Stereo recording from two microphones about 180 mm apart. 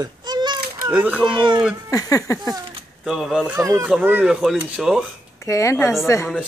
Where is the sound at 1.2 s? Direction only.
25° right (ahead or behind).